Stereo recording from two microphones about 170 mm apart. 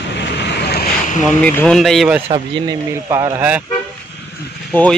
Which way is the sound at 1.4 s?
5° left (ahead or behind).